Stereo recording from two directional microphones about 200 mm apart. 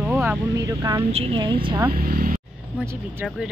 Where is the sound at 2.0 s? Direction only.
45° right (ahead or behind).